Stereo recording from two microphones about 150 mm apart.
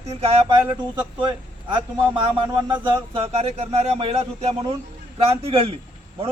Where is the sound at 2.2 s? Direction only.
35° right (ahead or behind).